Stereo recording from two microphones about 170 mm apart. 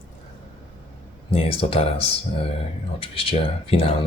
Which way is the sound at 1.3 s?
35° left (ahead or behind).